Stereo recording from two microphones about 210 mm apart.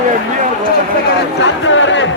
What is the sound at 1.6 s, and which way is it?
Chatter, 65° left (ahead or behind).